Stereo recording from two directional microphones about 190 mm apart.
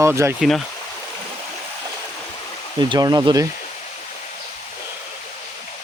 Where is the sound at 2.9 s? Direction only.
20° right (ahead or behind).